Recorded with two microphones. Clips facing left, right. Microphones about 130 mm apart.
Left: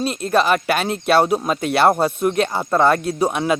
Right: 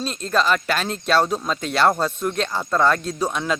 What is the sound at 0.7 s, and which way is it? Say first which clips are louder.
Speech: left 4 dB; 60° left (ahead or behind).